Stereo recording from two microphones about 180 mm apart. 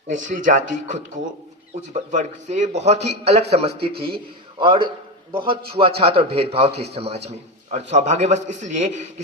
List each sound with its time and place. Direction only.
0.1 s a man's voice: 45° right (ahead or behind)